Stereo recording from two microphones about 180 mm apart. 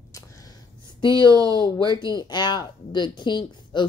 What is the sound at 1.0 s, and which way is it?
Speech, 25° left (ahead or behind).